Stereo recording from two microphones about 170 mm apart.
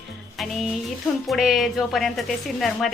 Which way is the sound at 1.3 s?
Centre (ahead or behind).